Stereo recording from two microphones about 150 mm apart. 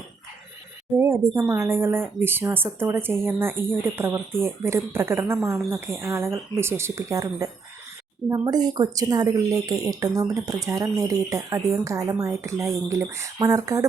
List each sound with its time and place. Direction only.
0.9 s a woman's voice: 15° right (ahead or behind)